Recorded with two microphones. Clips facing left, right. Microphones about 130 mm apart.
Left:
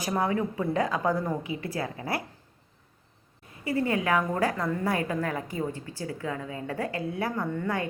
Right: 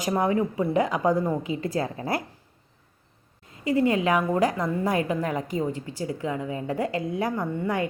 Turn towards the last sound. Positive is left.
turn(degrees=-15)  # may be behind; listen again after turning